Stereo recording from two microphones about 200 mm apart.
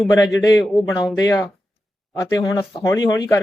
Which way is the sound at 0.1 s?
15° left (ahead or behind).